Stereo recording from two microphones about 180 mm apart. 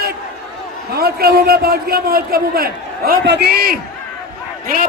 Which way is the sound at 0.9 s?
60° right (ahead or behind).